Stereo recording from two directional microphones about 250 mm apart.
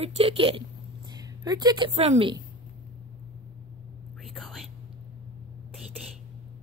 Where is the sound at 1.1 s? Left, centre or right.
Centre.